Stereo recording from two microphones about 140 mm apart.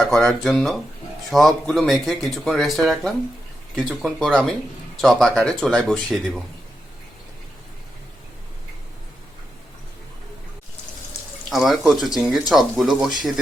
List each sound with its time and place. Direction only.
0.0 s speech: centre (ahead or behind)
11.4 s speech: centre (ahead or behind)